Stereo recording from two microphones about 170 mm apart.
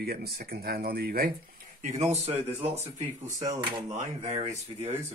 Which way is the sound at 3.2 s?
20° right (ahead or behind).